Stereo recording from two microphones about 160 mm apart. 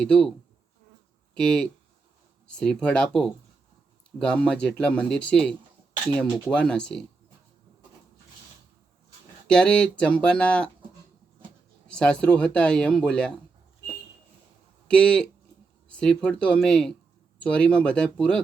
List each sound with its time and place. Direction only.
0.0 s speech: 5° left (ahead or behind)
9.5 s speech: 5° left (ahead or behind)
11.9 s speech: 5° left (ahead or behind)
14.8 s speech: 5° left (ahead or behind)